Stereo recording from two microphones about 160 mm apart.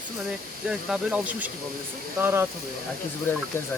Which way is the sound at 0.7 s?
5° right (ahead or behind).